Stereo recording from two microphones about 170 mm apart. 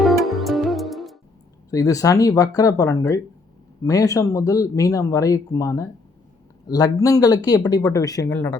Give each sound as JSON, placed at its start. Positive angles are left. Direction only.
{"t": 0.0, "sound": "music", "side_deg": 0}
{"t": 1.7, "sound": "speech", "side_deg": 20}